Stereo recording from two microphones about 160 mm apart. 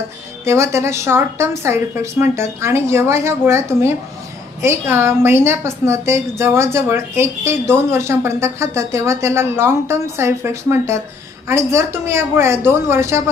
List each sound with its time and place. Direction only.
0.4 s a woman's voice: 15° right (ahead or behind)